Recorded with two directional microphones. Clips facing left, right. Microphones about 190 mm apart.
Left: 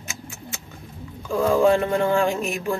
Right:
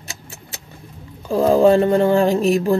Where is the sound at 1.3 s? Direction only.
35° right (ahead or behind).